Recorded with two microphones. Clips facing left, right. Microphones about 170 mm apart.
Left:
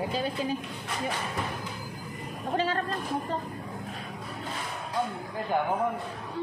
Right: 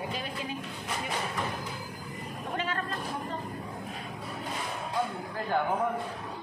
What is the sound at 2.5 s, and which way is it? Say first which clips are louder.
Speech: left 6 dB; 30° left (ahead or behind).